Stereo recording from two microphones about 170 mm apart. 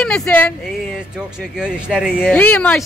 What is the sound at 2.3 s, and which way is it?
Speech, 10° left (ahead or behind).